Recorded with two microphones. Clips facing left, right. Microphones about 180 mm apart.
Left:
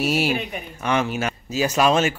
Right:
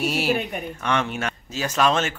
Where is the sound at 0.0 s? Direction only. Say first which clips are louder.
Left 1 dB; centre (ahead or behind).